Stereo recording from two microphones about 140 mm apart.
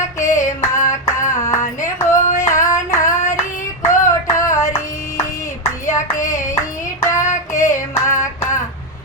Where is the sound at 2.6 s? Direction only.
25° left (ahead or behind).